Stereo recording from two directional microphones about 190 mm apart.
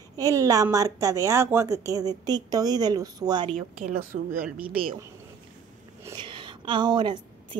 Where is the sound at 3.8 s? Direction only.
45° right (ahead or behind).